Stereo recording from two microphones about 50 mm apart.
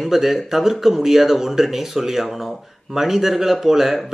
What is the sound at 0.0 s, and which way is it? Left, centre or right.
Speech, centre.